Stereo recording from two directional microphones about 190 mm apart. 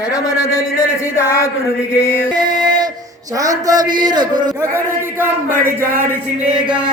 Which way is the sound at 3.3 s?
20° right (ahead or behind).